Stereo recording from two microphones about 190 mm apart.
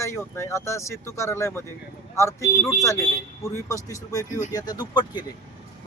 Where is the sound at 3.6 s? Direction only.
15° left (ahead or behind).